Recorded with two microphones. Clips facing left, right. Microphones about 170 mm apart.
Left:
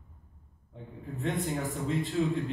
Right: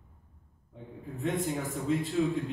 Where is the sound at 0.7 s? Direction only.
Centre (ahead or behind).